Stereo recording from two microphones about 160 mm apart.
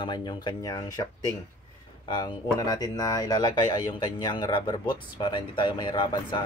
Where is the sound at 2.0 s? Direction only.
25° left (ahead or behind).